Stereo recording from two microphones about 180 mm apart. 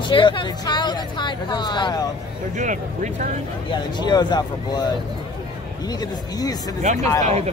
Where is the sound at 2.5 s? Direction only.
45° right (ahead or behind).